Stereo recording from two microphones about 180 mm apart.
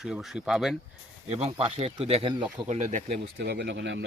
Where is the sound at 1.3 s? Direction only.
35° right (ahead or behind).